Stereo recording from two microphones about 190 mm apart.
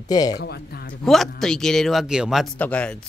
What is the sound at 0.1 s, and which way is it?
Speech, 20° left (ahead or behind).